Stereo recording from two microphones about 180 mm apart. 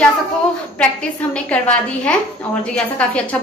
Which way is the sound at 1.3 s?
5° left (ahead or behind).